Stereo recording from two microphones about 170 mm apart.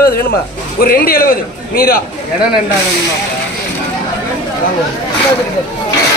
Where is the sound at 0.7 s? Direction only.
60° left (ahead or behind).